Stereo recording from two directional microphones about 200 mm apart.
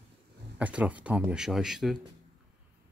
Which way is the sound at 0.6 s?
5° right (ahead or behind).